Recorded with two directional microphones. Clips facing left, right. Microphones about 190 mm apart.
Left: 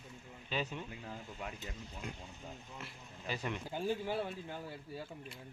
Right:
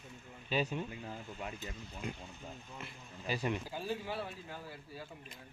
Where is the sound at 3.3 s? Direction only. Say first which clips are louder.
Right 4 dB; 10° right (ahead or behind).